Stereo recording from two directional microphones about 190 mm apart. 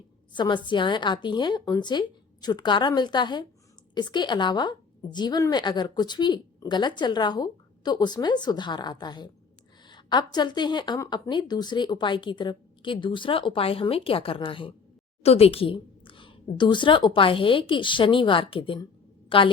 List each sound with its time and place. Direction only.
0.3 s a woman's voice: 25° left (ahead or behind)